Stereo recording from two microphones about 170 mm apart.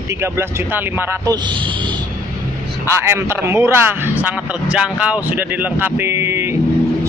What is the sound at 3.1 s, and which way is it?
Speech, 15° right (ahead or behind).